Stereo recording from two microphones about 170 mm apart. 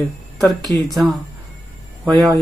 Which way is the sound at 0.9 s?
Centre (ahead or behind).